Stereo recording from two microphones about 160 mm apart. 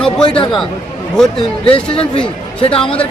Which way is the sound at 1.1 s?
5° left (ahead or behind).